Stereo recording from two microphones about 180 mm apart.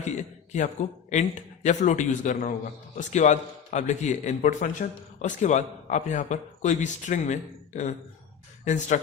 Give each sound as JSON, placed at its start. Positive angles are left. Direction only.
{"t": 0.0, "sound": "a man's voice", "side_deg": 40}